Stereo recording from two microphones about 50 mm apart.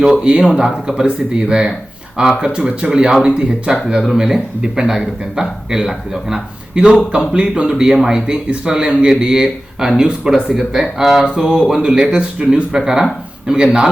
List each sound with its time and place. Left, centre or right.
0.3 s a man's voice: centre